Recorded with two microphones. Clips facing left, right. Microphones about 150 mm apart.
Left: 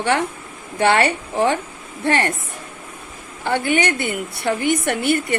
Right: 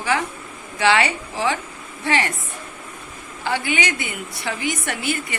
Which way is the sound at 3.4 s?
55° left (ahead or behind).